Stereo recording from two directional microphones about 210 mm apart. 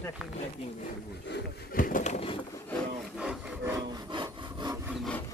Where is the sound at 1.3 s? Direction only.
40° left (ahead or behind).